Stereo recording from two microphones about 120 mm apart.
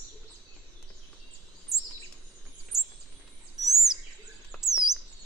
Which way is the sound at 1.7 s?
5° right (ahead or behind).